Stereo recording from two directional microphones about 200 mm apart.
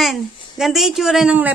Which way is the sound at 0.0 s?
Centre (ahead or behind).